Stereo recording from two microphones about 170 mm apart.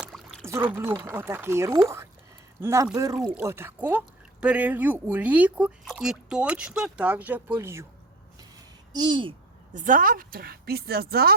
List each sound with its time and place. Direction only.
0.0 s a sound: centre (ahead or behind)
0.4 s speech: 15° right (ahead or behind)
8.9 s a child's voice: 25° right (ahead or behind)
9.7 s speech: 50° right (ahead or behind)